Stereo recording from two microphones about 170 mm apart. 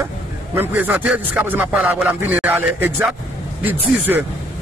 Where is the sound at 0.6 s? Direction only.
10° right (ahead or behind).